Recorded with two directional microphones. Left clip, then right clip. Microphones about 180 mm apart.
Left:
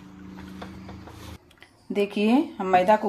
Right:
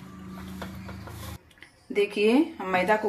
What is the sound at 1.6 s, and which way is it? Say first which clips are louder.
Speech: even; 60° left (ahead or behind).